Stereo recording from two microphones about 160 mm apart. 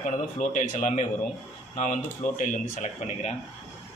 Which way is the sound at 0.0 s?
45° left (ahead or behind).